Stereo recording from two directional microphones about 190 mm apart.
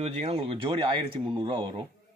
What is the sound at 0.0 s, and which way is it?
A man's voice, 35° right (ahead or behind).